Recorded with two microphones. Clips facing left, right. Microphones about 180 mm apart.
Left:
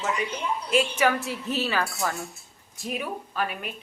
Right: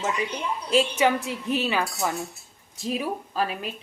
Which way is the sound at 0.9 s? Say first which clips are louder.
Right 1 dB; 20° right (ahead or behind).